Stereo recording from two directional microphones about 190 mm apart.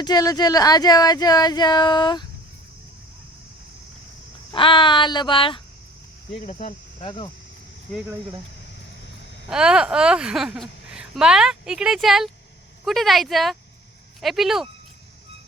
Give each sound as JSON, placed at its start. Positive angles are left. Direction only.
{"t": 0.0, "sound": "speech", "side_deg": 20}
{"t": 4.5, "sound": "speech", "side_deg": 25}
{"t": 9.5, "sound": "a woman's voice", "side_deg": -5}